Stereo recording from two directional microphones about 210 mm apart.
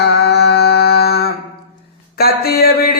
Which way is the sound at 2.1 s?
45° left (ahead or behind).